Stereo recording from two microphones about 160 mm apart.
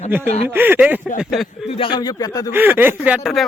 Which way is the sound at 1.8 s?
30° left (ahead or behind).